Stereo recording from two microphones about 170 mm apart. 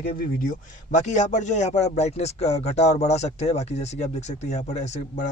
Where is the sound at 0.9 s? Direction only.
45° left (ahead or behind).